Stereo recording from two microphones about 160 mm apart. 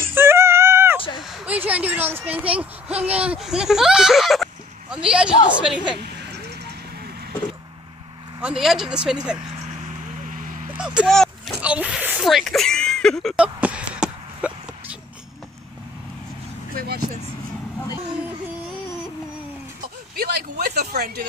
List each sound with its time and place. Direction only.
0.0 s a sound: 15° right (ahead or behind)
1.2 s speech: 5° right (ahead or behind)
8.4 s speech: 5° right (ahead or behind)
10.7 s vehicle: 5° right (ahead or behind)
11.6 s speech: 5° right (ahead or behind)
13.4 s a sound: 10° right (ahead or behind)
16.7 s vehicle: 75° right (ahead or behind)
20.2 s speech: 75° right (ahead or behind)